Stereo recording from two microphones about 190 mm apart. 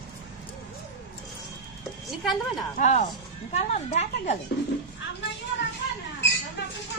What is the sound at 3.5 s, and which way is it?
Speech, 35° left (ahead or behind).